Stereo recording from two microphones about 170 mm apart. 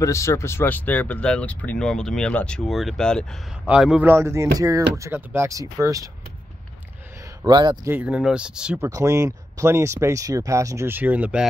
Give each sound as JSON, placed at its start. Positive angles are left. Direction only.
{"t": 0.0, "sound": "speech", "side_deg": 15}
{"t": 7.4, "sound": "speech", "side_deg": -25}
{"t": 7.9, "sound": "speech", "side_deg": -5}
{"t": 8.8, "sound": "speech", "side_deg": -20}